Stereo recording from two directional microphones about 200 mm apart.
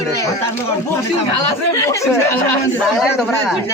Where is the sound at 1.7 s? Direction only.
15° left (ahead or behind).